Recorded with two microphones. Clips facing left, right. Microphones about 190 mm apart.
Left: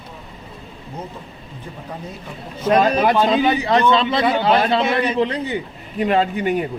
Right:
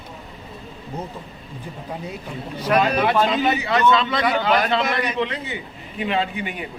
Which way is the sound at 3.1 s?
30° left (ahead or behind).